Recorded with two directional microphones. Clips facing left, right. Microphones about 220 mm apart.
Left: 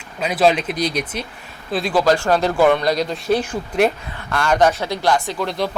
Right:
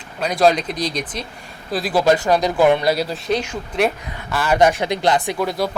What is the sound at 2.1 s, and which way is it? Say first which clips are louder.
Speech: right 2 dB; 15° right (ahead or behind).